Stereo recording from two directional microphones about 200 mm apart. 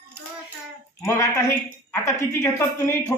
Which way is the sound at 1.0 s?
15° left (ahead or behind).